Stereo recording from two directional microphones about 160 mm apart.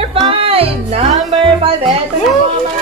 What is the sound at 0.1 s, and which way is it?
Music, 35° right (ahead or behind).